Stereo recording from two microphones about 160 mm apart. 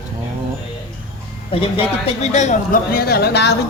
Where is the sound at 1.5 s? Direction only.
35° left (ahead or behind).